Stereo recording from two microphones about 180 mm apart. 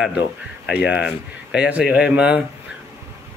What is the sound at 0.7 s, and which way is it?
Speech, 65° left (ahead or behind).